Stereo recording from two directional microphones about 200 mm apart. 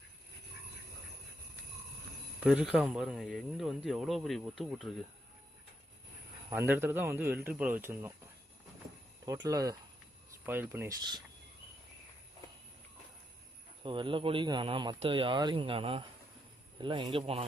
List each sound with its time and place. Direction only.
2.4 s speech: 5° right (ahead or behind)
6.5 s speech: 10° right (ahead or behind)
9.2 s speech: 15° right (ahead or behind)
13.8 s speech: 25° right (ahead or behind)